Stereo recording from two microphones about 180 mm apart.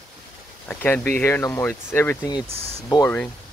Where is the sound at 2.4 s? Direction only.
35° right (ahead or behind).